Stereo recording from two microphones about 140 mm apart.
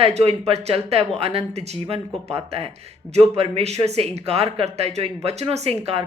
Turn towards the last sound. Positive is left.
turn(degrees=-50)  # may be behind; listen again after turning